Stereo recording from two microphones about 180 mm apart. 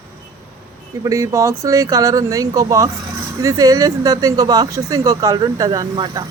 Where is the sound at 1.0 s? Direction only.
15° right (ahead or behind).